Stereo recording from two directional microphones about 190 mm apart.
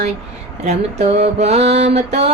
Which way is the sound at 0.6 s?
35° right (ahead or behind).